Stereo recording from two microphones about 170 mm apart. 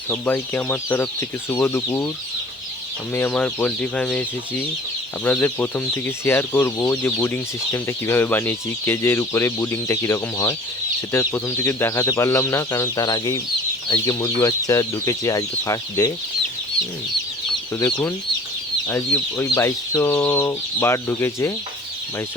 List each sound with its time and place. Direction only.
0.1 s speech: 10° left (ahead or behind)
3.1 s speech: 10° left (ahead or behind)
17.7 s speech: 20° left (ahead or behind)